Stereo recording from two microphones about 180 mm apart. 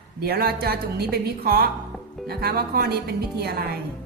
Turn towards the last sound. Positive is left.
turn(degrees=-60)  # may be behind; listen again after turning